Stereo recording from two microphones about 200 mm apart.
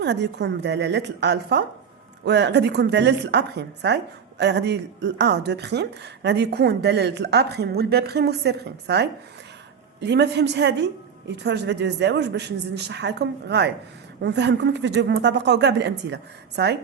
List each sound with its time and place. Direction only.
0.0 s a woman's voice: 60° right (ahead or behind)